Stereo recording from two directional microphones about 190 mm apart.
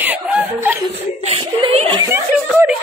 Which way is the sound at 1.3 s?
30° right (ahead or behind).